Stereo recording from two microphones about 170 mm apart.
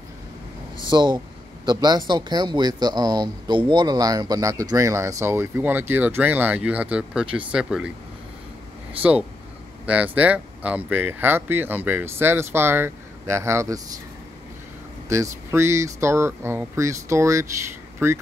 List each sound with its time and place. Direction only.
0.8 s speech: 25° right (ahead or behind); by 7.9 s 5° right (ahead or behind)
9.8 s speech: 10° right (ahead or behind)
15.0 s speech: 15° right (ahead or behind)